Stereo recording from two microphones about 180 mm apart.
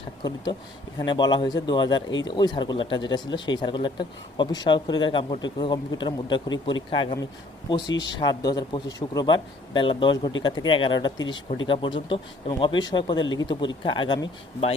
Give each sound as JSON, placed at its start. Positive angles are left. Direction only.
{"t": 0.2, "sound": "speech", "side_deg": 20}